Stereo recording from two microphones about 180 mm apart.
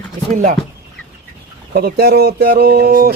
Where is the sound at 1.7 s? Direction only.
60° right (ahead or behind).